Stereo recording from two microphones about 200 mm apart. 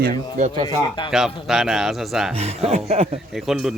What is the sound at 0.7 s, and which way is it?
Speech, 20° left (ahead or behind).